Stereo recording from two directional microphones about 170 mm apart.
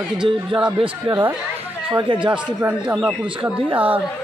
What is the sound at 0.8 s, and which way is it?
Speech, 20° right (ahead or behind).